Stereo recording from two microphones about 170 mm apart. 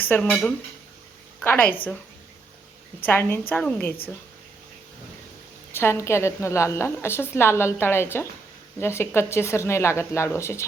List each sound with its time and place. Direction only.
0.1 s a woman's voice: 5° left (ahead or behind)
3.0 s a woman's voice: 10° left (ahead or behind)
5.7 s a woman's voice: 15° left (ahead or behind)